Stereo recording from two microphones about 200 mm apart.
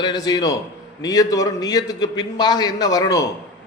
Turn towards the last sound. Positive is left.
turn(degrees=15)  # may be behind; listen again after turning